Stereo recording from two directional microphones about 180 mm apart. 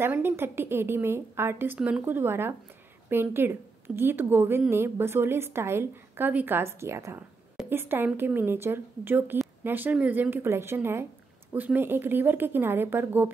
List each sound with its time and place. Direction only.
0.0 s a woman's voice: 10° right (ahead or behind)